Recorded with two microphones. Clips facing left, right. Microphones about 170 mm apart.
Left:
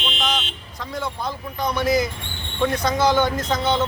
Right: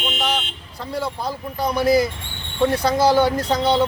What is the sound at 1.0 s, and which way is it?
Speech, 35° right (ahead or behind).